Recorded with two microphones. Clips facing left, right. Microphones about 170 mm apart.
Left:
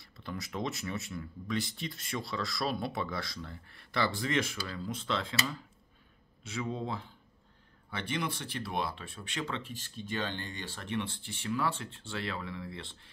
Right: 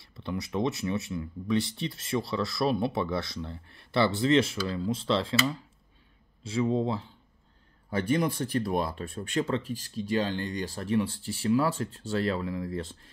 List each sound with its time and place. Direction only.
0.2 s speech: 25° right (ahead or behind)
6.4 s speech: 30° right (ahead or behind)
7.9 s speech: 40° right (ahead or behind)